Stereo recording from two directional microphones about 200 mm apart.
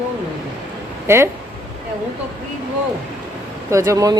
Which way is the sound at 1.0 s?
10° right (ahead or behind).